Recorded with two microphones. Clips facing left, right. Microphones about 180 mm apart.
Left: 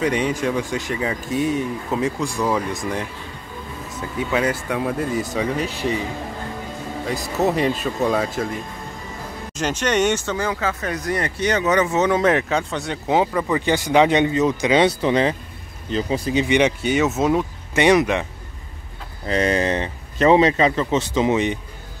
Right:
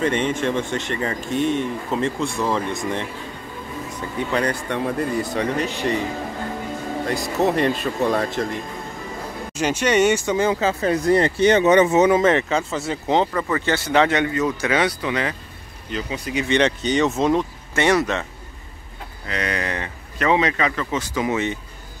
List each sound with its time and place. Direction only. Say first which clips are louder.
0.0 s speech: even; 10° left (ahead or behind)
7.1 s speech: even; 5° left (ahead or behind)
9.5 s speech: right 2 dB; 10° right (ahead or behind)
10.3 s speech: right 4 dB; 25° right (ahead or behind)
12.1 s speech: right 1 dB; centre (ahead or behind); by 16.4 s 30° left (ahead or behind)
16.4 s speech: right 2 dB; 10° left (ahead or behind)
19.2 s speech: left 7 dB; 30° left (ahead or behind)